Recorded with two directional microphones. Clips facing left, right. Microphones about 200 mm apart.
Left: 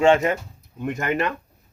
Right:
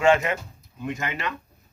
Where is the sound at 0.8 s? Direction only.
55° left (ahead or behind).